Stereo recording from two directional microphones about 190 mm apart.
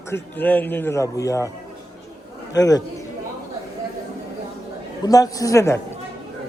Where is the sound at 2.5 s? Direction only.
20° left (ahead or behind).